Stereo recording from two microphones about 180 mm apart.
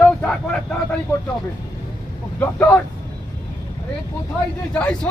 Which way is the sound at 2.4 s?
10° left (ahead or behind).